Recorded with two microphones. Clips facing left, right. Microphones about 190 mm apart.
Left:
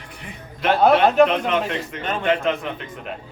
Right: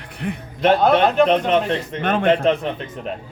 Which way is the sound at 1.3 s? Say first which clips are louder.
Right 5 dB; 30° right (ahead or behind).